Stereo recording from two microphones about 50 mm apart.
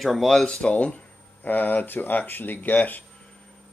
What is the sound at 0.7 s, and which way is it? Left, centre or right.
Speech, left.